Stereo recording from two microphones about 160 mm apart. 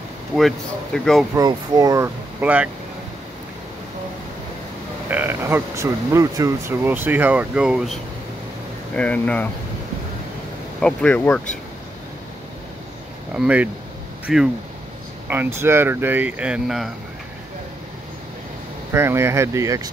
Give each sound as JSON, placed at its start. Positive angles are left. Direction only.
{"t": 0.4, "sound": "speech", "side_deg": 0}
{"t": 1.3, "sound": "speech", "side_deg": -20}
{"t": 2.4, "sound": "speech", "side_deg": -10}
{"t": 5.1, "sound": "speech", "side_deg": -15}
{"t": 8.9, "sound": "speech", "side_deg": 10}
{"t": 10.8, "sound": "speech", "side_deg": 5}
{"t": 13.3, "sound": "speech", "side_deg": -10}
{"t": 15.2, "sound": "speech", "side_deg": -15}
{"t": 18.9, "sound": "speech", "side_deg": -15}